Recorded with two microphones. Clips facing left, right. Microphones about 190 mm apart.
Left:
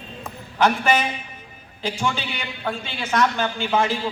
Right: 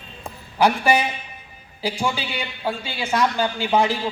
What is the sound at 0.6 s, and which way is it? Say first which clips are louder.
A man's voice: right 1 dB; 10° right (ahead or behind).